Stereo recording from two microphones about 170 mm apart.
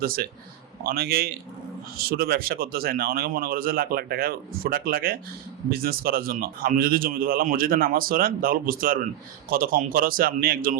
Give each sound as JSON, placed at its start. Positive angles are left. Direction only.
{"t": 0.9, "sound": "speech", "side_deg": -65}